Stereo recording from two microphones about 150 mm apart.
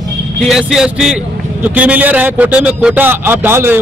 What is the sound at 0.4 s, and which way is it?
A man's voice, centre (ahead or behind).